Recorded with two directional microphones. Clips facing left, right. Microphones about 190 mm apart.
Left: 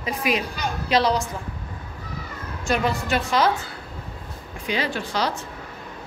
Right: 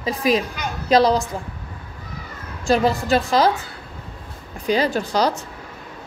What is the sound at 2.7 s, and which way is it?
Speech, 35° right (ahead or behind).